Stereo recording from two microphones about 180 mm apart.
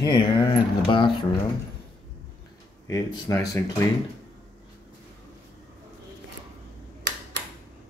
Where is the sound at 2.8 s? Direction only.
15° left (ahead or behind).